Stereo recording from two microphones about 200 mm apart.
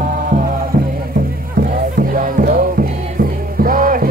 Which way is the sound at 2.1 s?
45° right (ahead or behind).